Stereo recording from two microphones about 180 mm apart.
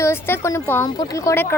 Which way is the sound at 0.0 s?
15° left (ahead or behind).